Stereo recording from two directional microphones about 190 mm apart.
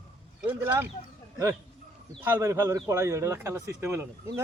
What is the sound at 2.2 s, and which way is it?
Speech, 15° right (ahead or behind).